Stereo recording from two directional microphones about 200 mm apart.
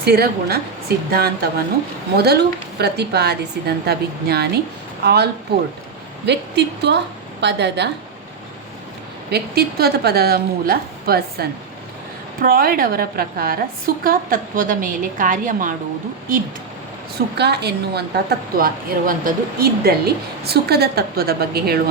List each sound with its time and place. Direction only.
0.0 s a woman's voice: 50° right (ahead or behind)
9.3 s a woman's voice: 50° right (ahead or behind)
17.2 s a woman's voice: 55° right (ahead or behind)